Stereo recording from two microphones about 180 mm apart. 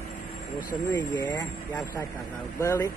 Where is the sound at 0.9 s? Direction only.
10° left (ahead or behind).